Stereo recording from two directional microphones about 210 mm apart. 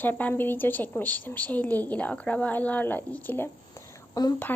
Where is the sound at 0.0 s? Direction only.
10° left (ahead or behind).